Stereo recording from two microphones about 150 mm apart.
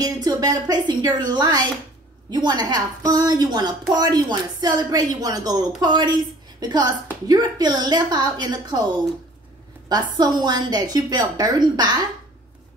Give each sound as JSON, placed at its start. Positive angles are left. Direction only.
{"t": 0.0, "sound": "a woman's voice", "side_deg": -25}
{"t": 9.8, "sound": "a woman's voice", "side_deg": -25}